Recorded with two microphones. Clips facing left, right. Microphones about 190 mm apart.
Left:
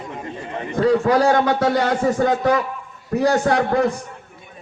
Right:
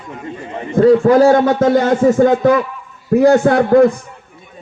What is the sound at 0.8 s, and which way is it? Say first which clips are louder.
A man's voice: right 7 dB; 45° right (ahead or behind).